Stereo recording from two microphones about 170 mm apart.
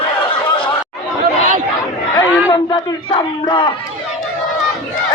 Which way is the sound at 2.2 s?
25° left (ahead or behind).